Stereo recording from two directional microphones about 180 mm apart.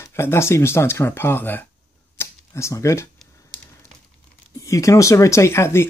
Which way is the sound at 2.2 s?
15° left (ahead or behind).